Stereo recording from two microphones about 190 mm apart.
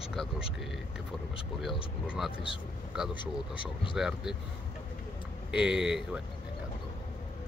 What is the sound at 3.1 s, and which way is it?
Speech, 25° left (ahead or behind).